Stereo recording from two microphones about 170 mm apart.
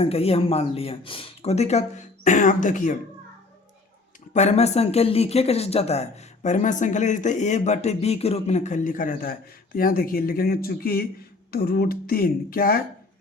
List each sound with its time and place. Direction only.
0.0 s speech: 35° left (ahead or behind)
4.4 s speech: 40° left (ahead or behind); by 12.8 s 60° left (ahead or behind)